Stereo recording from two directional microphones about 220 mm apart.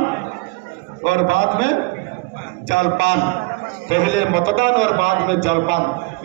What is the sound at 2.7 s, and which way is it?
A man's voice, 55° right (ahead or behind).